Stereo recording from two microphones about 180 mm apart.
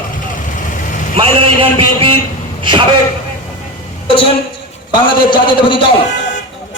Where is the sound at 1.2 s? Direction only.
30° right (ahead or behind).